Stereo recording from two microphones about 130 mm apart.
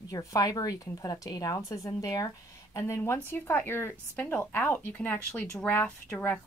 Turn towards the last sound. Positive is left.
turn(degrees=15)  # may be behind; listen again after turning